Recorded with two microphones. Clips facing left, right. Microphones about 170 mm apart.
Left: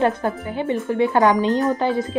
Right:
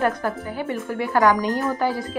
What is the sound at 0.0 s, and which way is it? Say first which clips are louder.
Speech: left 3 dB; 25° left (ahead or behind).